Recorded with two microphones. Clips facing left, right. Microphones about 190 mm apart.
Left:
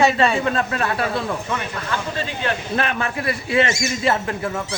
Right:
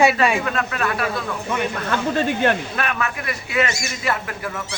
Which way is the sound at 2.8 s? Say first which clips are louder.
Left 2 dB; 30° left (ahead or behind).